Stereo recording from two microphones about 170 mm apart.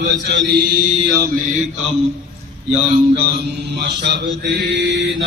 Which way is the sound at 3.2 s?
65° right (ahead or behind).